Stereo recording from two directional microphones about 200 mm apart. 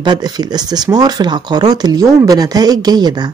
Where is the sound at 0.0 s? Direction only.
20° right (ahead or behind).